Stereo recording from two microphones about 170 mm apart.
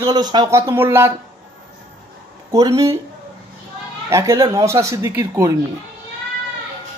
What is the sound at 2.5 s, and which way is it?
Speech, 20° right (ahead or behind).